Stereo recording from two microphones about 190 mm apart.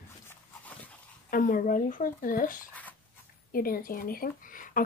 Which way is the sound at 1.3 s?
45° left (ahead or behind).